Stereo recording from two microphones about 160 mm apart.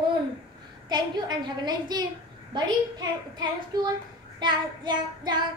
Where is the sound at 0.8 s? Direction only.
30° right (ahead or behind).